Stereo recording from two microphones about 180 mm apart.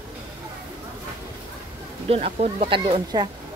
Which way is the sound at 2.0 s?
35° right (ahead or behind).